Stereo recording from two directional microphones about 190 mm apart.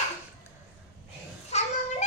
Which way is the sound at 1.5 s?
35° left (ahead or behind).